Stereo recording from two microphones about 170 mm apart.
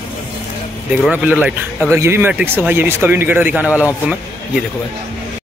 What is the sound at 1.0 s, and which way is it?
Speech, 10° right (ahead or behind).